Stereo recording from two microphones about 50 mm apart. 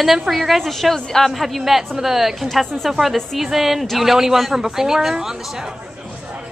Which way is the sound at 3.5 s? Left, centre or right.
Centre.